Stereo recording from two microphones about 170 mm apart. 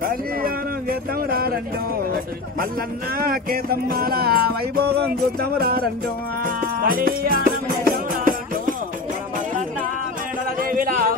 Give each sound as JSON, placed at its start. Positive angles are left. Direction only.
{"t": 3.2, "sound": "music", "side_deg": -60}
{"t": 10.6, "sound": "speech", "side_deg": -55}